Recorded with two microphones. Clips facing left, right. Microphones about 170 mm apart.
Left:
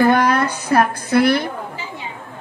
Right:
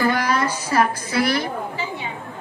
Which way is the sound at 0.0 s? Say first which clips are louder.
Left 5 dB; 60° left (ahead or behind).